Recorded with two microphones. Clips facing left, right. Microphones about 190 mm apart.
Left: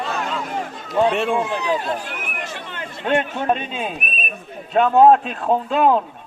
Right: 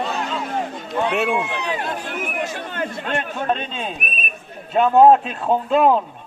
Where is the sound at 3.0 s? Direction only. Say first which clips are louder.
Left 10 dB; 20° left (ahead or behind).